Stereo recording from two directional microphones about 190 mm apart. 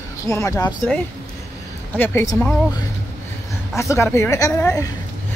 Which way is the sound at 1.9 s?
10° left (ahead or behind).